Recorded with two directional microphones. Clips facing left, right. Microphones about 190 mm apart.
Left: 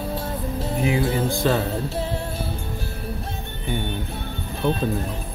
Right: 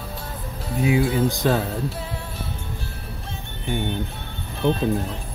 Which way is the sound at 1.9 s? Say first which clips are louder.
Left 5 dB; 25° left (ahead or behind).